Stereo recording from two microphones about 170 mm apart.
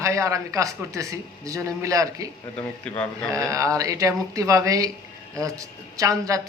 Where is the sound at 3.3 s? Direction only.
20° right (ahead or behind).